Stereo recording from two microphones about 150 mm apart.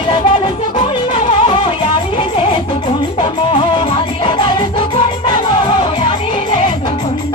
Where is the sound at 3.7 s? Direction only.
35° left (ahead or behind).